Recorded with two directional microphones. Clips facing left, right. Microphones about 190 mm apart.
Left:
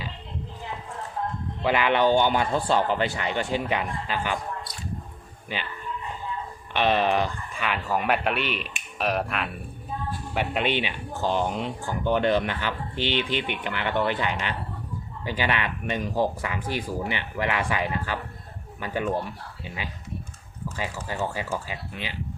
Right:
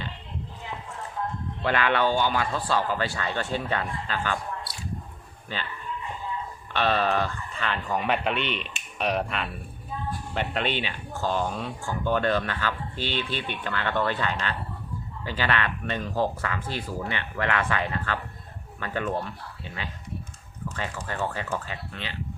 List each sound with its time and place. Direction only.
1.6 s speech: 15° left (ahead or behind)
5.5 s speech: 15° left (ahead or behind)
6.7 s speech: 15° left (ahead or behind)